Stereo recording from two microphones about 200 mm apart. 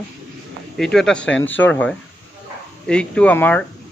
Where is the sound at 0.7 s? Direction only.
Centre (ahead or behind).